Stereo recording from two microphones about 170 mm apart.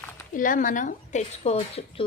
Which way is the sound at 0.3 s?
50° left (ahead or behind).